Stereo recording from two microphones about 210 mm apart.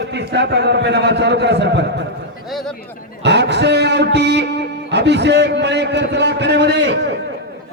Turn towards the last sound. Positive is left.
turn(degrees=-55)  # may be behind; listen again after turning